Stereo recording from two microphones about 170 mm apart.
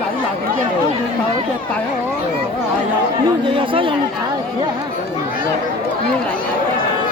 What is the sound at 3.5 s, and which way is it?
Speech, 30° right (ahead or behind).